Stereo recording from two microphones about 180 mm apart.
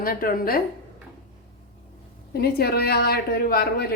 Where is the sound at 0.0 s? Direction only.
55° left (ahead or behind).